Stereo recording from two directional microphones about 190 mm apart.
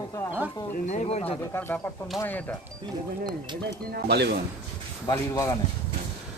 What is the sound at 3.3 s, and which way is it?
Speech, 60° right (ahead or behind).